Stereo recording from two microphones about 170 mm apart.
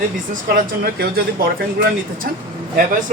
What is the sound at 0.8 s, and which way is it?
Speech, 60° right (ahead or behind).